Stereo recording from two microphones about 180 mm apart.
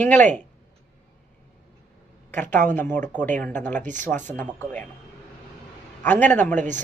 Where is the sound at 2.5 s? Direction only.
10° left (ahead or behind).